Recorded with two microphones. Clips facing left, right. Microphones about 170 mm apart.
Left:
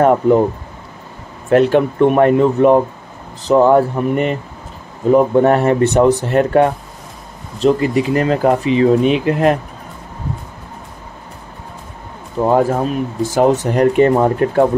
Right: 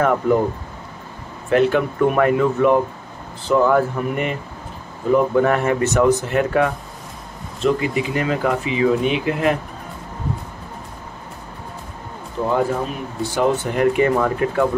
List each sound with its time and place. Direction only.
0.0 s speech: 35° left (ahead or behind)
1.7 s speech: 30° left (ahead or behind)
12.4 s speech: 45° left (ahead or behind)